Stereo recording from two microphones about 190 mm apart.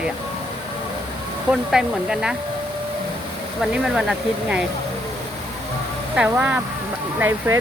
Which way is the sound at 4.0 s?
5° right (ahead or behind).